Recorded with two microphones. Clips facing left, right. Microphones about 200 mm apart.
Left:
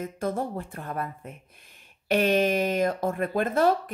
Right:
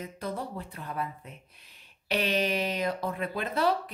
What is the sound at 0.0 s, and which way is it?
A woman's voice, 50° left (ahead or behind).